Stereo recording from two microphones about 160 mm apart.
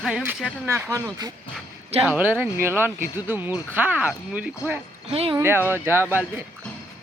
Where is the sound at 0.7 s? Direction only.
15° right (ahead or behind).